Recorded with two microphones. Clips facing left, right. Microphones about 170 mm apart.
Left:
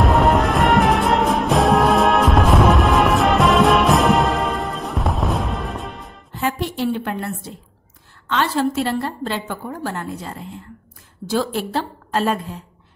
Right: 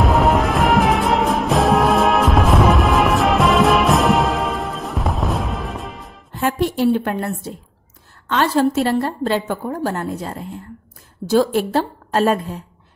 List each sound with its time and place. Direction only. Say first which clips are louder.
0.0 s music: even; centre (ahead or behind)
6.4 s a woman's voice: right 5 dB; 50° right (ahead or behind)